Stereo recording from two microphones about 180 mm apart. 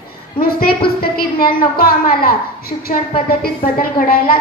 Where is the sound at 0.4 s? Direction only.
55° left (ahead or behind).